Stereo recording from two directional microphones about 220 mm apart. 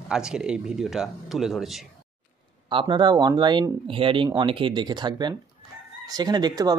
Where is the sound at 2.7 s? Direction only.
20° right (ahead or behind).